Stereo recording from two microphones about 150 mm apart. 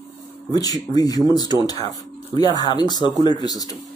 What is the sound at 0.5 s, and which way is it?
Speech, 25° left (ahead or behind).